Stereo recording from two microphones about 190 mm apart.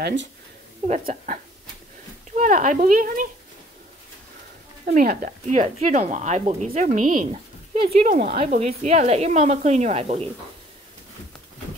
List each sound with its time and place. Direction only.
0.0 s speech: 70° right (ahead or behind)
0.8 s a woman's voice: 40° right (ahead or behind)
4.8 s speech: 45° right (ahead or behind)